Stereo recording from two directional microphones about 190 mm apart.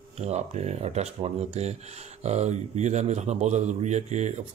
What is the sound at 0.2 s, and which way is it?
Speech, 35° right (ahead or behind).